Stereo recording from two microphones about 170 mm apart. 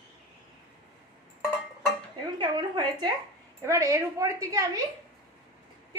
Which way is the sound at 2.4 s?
25° right (ahead or behind).